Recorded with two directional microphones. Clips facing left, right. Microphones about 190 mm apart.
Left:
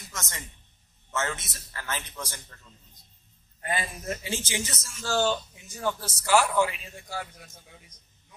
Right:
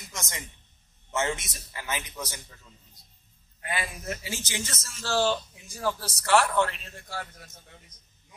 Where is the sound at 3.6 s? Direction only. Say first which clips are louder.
Left 2 dB; 35° left (ahead or behind).